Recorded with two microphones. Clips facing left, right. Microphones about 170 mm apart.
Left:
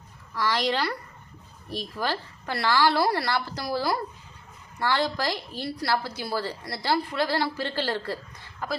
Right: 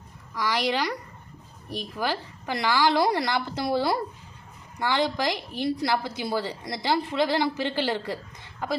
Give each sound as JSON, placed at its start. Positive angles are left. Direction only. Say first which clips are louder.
{"t": 0.3, "sound": "a woman's voice", "louder": "even", "side_deg": -10}